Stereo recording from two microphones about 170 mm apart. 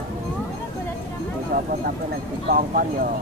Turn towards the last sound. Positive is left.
turn(degrees=-55)  # may be behind; listen again after turning